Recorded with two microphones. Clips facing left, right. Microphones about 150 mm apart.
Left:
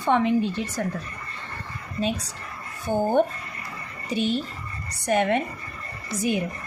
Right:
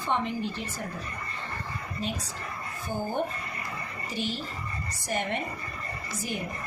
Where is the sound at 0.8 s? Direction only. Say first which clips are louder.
Left 10 dB; 85° left.